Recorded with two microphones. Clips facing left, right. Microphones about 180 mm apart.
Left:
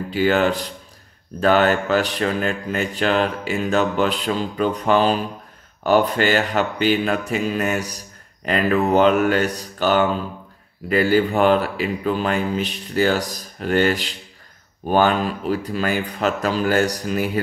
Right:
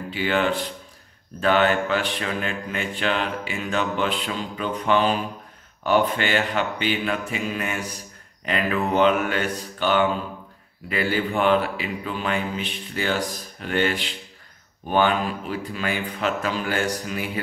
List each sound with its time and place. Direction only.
0.1 s speech: 40° left (ahead or behind)